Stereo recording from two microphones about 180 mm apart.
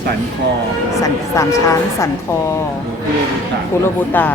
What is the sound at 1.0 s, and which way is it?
Speech, 15° left (ahead or behind).